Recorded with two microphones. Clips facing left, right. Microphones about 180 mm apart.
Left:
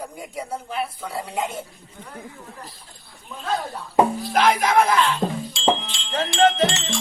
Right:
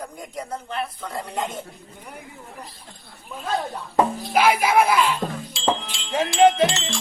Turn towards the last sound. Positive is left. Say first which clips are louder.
# right 2 dB
turn(degrees=-10)  # may be behind; listen again after turning